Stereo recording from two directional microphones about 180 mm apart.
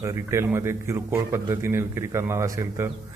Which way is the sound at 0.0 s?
15° right (ahead or behind).